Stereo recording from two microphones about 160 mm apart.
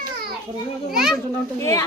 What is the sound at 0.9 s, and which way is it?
Speech, centre (ahead or behind).